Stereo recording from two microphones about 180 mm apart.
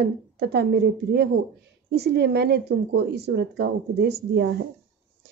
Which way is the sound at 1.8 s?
65° right (ahead or behind).